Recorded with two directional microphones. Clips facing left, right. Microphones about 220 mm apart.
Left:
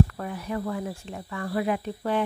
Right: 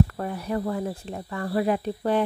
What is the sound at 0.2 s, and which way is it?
Speech, 35° right (ahead or behind).